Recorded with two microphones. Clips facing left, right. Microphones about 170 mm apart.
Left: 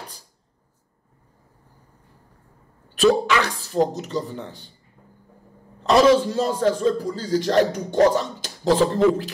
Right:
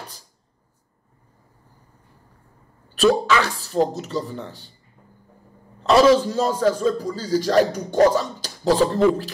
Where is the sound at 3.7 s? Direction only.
15° left (ahead or behind).